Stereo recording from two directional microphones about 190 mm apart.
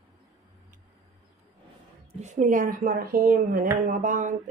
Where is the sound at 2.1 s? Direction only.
35° right (ahead or behind).